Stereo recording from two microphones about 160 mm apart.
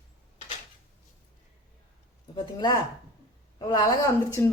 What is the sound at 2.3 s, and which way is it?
A woman's voice, 25° left (ahead or behind).